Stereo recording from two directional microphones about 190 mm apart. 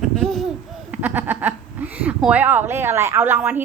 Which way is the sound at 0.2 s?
Centre (ahead or behind).